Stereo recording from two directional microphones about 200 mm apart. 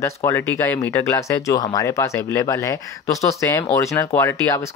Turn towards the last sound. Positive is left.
turn(degrees=10)  # may be behind; listen again after turning